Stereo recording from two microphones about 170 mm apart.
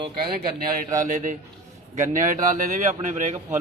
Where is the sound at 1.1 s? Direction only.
50° right (ahead or behind).